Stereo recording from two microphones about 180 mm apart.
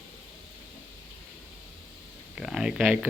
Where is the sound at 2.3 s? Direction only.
5° right (ahead or behind).